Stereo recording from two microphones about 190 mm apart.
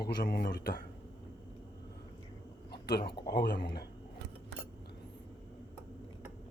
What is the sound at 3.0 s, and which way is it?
Speech, 25° left (ahead or behind).